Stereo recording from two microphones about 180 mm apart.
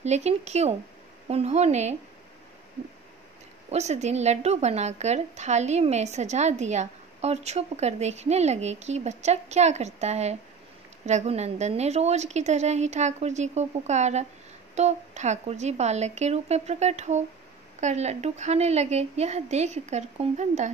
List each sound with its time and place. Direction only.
0.0 s a woman's voice: 35° right (ahead or behind)
3.7 s a woman's voice: 40° right (ahead or behind)